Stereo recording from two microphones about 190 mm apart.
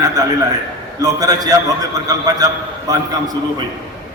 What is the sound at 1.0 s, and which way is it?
A man's voice, 20° right (ahead or behind).